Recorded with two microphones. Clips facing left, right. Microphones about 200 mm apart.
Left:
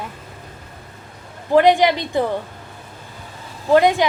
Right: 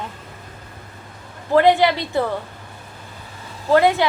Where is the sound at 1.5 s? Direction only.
15° left (ahead or behind).